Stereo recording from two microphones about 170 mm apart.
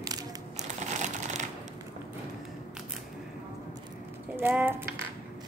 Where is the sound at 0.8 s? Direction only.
45° right (ahead or behind).